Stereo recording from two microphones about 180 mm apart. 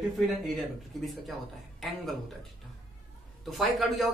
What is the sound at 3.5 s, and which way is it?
Speech, centre (ahead or behind).